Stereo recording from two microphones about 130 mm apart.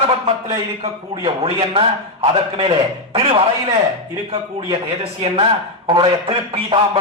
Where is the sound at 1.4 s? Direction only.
45° right (ahead or behind).